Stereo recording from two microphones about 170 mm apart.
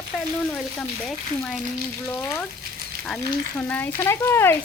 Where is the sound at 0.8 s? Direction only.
5° left (ahead or behind).